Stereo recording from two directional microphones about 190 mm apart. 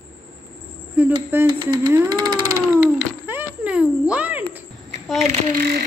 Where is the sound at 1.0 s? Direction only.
10° right (ahead or behind).